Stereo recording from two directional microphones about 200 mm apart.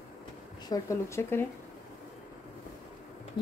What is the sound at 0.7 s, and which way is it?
Speech, 15° left (ahead or behind).